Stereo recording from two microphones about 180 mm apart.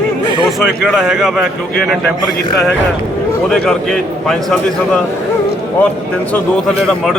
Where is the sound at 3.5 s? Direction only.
5° left (ahead or behind).